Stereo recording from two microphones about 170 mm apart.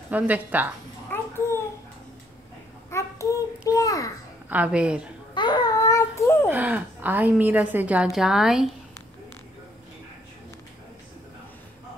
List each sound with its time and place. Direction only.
0.1 s a woman's voice: 10° right (ahead or behind)
1.1 s babbling: 15° left (ahead or behind)
2.9 s a sound: 20° left (ahead or behind)
4.5 s a woman's voice: 10° right (ahead or behind)
5.3 s babbling: 25° left (ahead or behind)
6.5 s a woman's voice: 10° right (ahead or behind)